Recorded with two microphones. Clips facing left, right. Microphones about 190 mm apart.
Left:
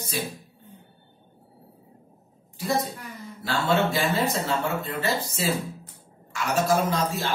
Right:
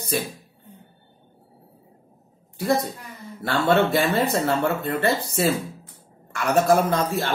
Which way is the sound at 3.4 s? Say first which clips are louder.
Right 4 dB; 55° right (ahead or behind).